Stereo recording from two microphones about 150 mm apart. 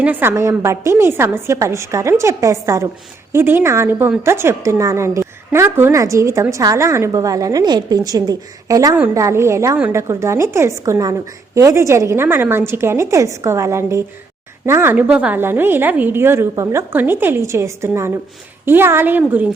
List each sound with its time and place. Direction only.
0.0 s a woman's voice: 15° right (ahead or behind)